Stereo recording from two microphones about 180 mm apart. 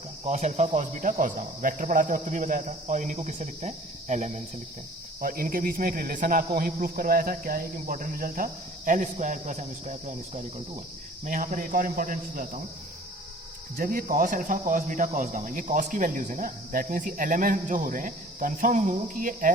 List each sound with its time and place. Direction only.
0.3 s speech: 40° right (ahead or behind)
5.2 s speech: 55° right (ahead or behind)
13.7 s speech: 50° right (ahead or behind)